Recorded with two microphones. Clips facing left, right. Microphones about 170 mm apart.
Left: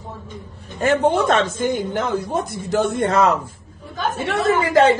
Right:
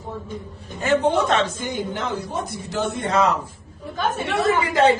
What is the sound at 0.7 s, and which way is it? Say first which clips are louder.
A woman's voice: left 2 dB; 50° left (ahead or behind).